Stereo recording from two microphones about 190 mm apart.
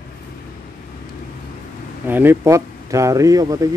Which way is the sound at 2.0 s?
10° right (ahead or behind).